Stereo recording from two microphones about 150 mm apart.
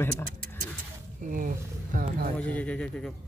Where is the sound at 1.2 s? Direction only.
65° right (ahead or behind).